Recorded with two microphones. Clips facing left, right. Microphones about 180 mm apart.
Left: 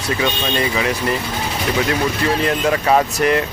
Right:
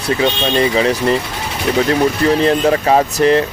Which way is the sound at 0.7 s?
30° right (ahead or behind).